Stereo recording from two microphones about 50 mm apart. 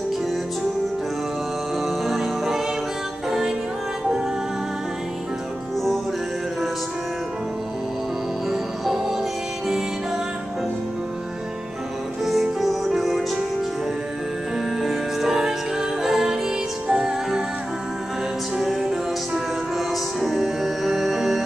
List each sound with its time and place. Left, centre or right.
1.9 s music: centre
8.5 s music: centre
12.3 s music: centre
14.8 s music: centre
18.6 s music: centre